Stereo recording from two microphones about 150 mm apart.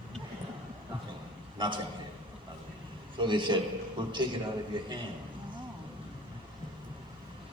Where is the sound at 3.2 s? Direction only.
30° right (ahead or behind).